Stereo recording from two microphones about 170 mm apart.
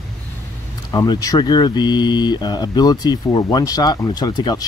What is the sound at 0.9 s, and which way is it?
Speech, 25° left (ahead or behind).